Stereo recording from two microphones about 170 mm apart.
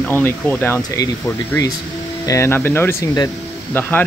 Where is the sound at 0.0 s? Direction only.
10° left (ahead or behind).